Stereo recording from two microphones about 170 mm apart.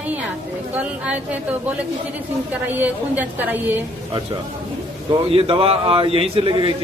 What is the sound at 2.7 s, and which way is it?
A woman's voice, 10° right (ahead or behind).